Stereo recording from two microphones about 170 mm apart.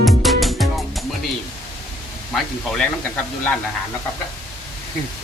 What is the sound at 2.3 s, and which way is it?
Speech, 5° left (ahead or behind).